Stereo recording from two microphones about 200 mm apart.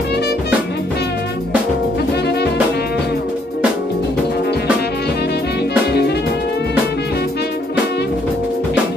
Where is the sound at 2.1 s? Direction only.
55° left (ahead or behind).